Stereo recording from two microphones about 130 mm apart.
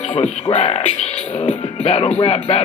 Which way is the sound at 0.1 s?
45° left (ahead or behind).